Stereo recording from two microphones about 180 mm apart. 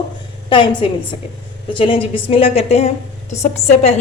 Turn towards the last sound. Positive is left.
turn(degrees=40)  # may be behind; listen again after turning